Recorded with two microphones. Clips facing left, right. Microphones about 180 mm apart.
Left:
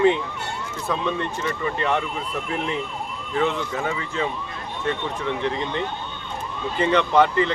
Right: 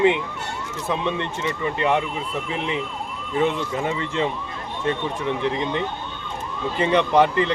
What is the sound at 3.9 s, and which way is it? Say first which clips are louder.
Speech: right 2 dB; 25° right (ahead or behind).